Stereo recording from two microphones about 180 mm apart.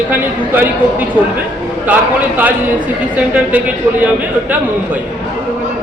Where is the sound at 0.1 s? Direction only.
10° right (ahead or behind).